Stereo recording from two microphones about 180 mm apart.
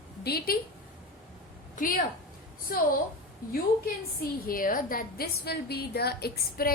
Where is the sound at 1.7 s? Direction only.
50° left (ahead or behind).